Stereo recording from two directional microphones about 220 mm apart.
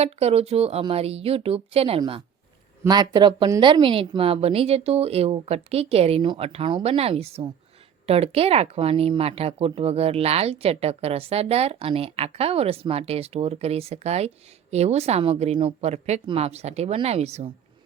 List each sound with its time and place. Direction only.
0.0 s speech: 30° right (ahead or behind)